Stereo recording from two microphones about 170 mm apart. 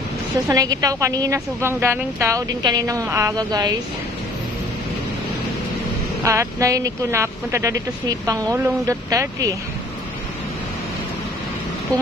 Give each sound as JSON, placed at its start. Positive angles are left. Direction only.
{"t": 0.5, "sound": "a woman's voice", "side_deg": -20}
{"t": 6.2, "sound": "a woman's voice", "side_deg": -15}